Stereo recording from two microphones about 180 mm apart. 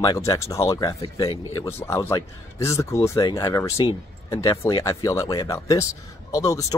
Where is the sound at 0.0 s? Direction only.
20° left (ahead or behind).